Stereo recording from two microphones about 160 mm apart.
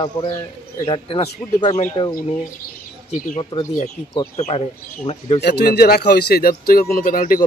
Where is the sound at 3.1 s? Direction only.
45° left (ahead or behind).